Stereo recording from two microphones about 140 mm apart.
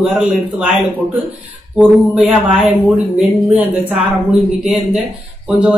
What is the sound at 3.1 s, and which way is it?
Speech, 10° right (ahead or behind).